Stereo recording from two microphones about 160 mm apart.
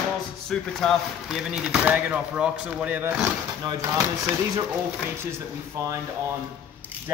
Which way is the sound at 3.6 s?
25° right (ahead or behind).